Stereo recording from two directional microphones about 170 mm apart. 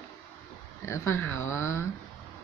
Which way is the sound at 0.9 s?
15° left (ahead or behind).